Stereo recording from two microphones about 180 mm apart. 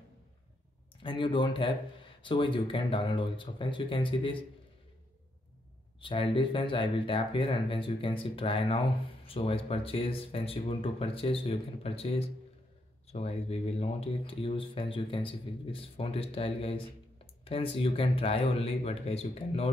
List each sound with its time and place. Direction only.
1.0 s speech: 25° left (ahead or behind)
5.9 s speech: 30° left (ahead or behind)